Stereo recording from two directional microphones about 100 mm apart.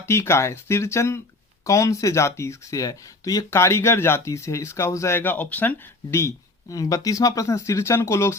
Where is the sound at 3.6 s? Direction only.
25° left (ahead or behind).